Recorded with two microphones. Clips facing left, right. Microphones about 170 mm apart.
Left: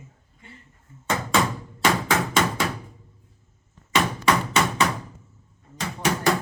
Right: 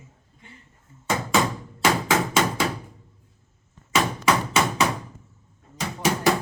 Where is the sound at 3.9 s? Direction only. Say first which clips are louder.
Even; 5° right (ahead or behind).